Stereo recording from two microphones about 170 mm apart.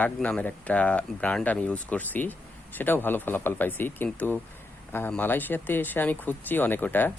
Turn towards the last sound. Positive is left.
turn(degrees=10)  # may be behind; listen again after turning